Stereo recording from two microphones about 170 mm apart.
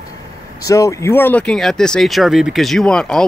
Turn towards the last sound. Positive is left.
turn(degrees=5)  # may be behind; listen again after turning